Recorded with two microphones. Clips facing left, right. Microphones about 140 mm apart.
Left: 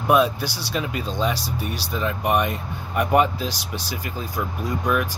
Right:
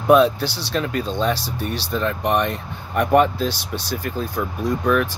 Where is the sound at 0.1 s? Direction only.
10° left (ahead or behind).